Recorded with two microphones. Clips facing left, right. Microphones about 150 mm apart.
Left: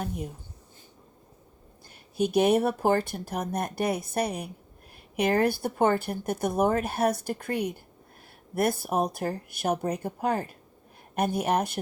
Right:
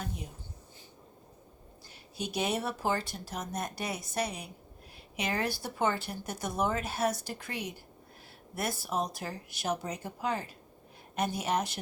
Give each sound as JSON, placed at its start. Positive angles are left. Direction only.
{"t": 2.1, "sound": "speech", "side_deg": 55}